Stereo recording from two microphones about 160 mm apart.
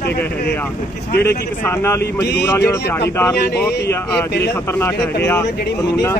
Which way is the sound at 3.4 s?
90° left.